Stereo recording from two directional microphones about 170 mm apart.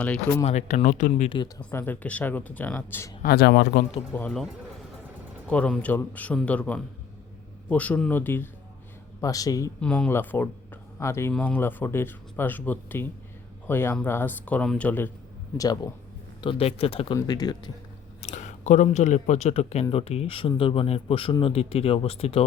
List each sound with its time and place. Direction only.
0.4 s speech: 45° left (ahead or behind)
1.3 s speech: 25° left (ahead or behind)
1.7 s a man's voice: 10° left (ahead or behind)
3.2 s speech: 70° left (ahead or behind)
4.1 s a man's voice: 5° left (ahead or behind)
5.5 s a man's voice: 5° left (ahead or behind)
9.8 s a man's voice: 5° left (ahead or behind)
15.5 s speech: 20° left (ahead or behind)
16.4 s speech: 35° left (ahead or behind)
17.2 s speech: 20° left (ahead or behind)
18.2 s speech: 40° left (ahead or behind)